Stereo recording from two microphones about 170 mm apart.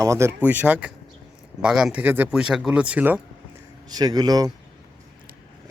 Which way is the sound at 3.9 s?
25° right (ahead or behind).